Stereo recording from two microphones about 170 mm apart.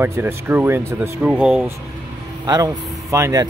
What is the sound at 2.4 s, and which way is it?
Speech, 20° right (ahead or behind).